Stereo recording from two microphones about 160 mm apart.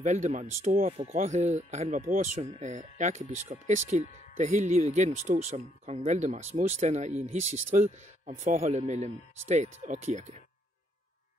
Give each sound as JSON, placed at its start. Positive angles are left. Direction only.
{"t": 0.0, "sound": "speech", "side_deg": -45}